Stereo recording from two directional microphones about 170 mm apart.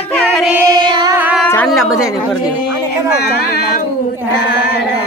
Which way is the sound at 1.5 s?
5° left (ahead or behind).